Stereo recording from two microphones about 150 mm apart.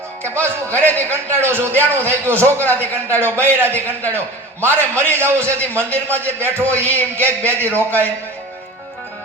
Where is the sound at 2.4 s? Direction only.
10° left (ahead or behind).